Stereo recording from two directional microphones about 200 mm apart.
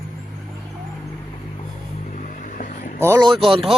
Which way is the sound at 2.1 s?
40° left (ahead or behind).